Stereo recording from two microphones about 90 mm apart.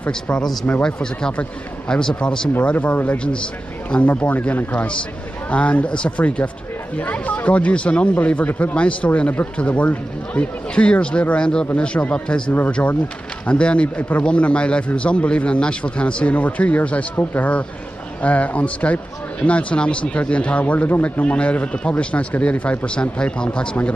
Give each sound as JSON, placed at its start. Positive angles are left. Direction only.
{"t": 0.0, "sound": "speech", "side_deg": 10}